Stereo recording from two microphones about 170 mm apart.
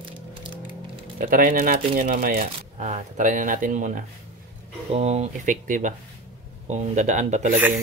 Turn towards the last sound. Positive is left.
turn(degrees=-40)  # may be behind; listen again after turning